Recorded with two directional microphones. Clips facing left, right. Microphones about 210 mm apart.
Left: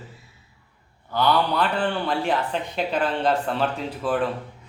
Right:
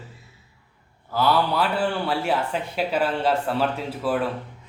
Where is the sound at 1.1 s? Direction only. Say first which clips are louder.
Even; 5° right (ahead or behind).